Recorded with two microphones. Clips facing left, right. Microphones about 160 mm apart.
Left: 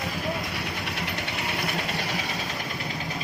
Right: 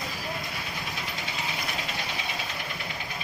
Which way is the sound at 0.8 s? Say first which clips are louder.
Left 4 dB; 70° left (ahead or behind).